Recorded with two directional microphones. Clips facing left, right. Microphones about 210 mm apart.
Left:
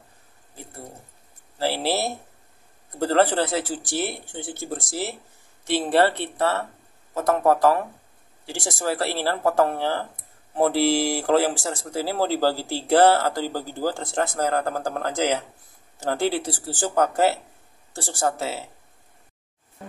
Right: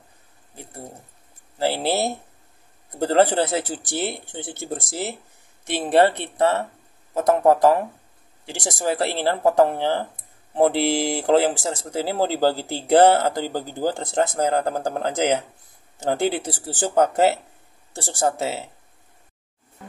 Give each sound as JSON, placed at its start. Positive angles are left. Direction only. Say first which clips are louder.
{"t": 1.6, "sound": "speech", "louder": "right 2 dB", "side_deg": -20}